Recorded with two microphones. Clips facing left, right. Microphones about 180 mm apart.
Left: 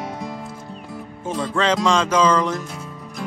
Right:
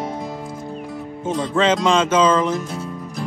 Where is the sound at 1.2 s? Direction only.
20° right (ahead or behind).